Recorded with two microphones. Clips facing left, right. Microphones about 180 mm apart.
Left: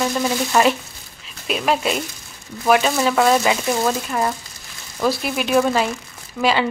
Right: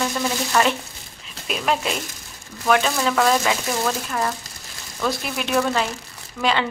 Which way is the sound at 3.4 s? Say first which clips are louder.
Left 4 dB; 15° left (ahead or behind).